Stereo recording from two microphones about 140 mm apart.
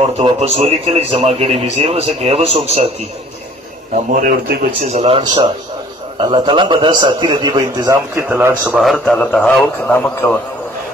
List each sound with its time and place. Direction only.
0.2 s a man's voice: 45° right (ahead or behind)
3.9 s a man's voice: 90° right
4.8 s a man's voice: 50° right (ahead or behind)
5.2 s a man's voice: 30° right (ahead or behind)
8.3 s speech: 10° right (ahead or behind)
8.6 s a man's voice: centre (ahead or behind)